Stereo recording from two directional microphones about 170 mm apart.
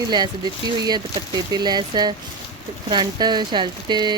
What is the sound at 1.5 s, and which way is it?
Speech, 25° right (ahead or behind).